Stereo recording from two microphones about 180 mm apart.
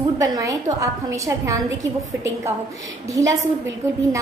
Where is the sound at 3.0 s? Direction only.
20° right (ahead or behind).